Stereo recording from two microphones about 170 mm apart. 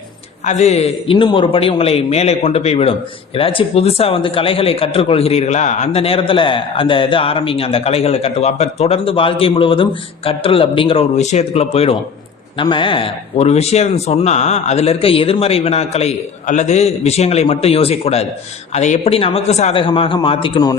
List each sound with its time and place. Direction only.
0.4 s speech: 40° left (ahead or behind); by 20.7 s 25° left (ahead or behind)